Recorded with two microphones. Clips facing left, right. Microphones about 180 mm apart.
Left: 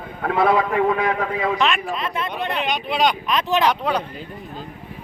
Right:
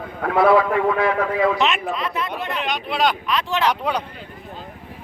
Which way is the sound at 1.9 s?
25° left (ahead or behind).